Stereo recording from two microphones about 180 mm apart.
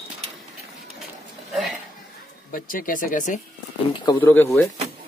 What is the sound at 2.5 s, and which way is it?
Speech, 50° left (ahead or behind).